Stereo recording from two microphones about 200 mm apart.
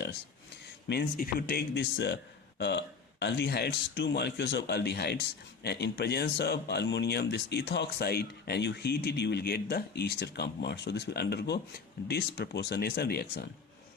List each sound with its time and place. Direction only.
0.9 s speech: 50° left (ahead or behind)